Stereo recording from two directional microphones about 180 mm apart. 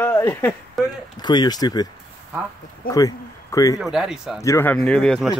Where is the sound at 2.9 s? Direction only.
20° left (ahead or behind).